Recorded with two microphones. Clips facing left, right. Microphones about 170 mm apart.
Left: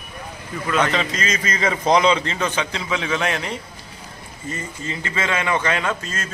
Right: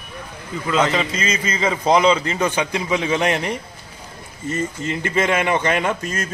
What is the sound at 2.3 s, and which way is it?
A man's voice, 15° right (ahead or behind).